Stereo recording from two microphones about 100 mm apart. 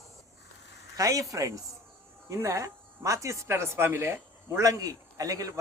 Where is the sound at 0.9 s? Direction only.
35° right (ahead or behind).